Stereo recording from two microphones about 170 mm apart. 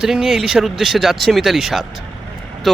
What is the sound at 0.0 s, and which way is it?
Speech, centre (ahead or behind).